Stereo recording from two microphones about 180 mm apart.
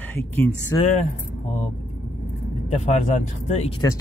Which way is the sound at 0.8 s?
40° left (ahead or behind).